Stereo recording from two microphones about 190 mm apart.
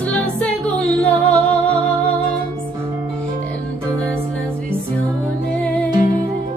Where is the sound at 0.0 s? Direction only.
5° left (ahead or behind).